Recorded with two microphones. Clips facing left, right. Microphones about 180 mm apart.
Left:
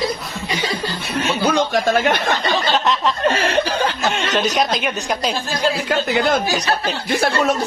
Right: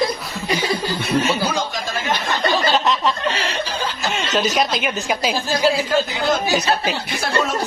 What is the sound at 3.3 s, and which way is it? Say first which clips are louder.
Chuckle: left 6 dB; 50° left (ahead or behind).